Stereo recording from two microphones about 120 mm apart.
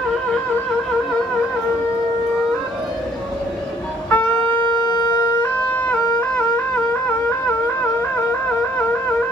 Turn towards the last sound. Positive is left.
turn(degrees=20)  # may be behind; listen again after turning